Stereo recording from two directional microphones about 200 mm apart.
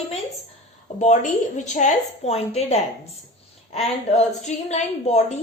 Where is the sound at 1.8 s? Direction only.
35° left (ahead or behind).